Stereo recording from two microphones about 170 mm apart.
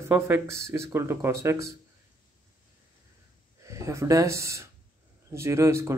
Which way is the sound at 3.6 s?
20° right (ahead or behind).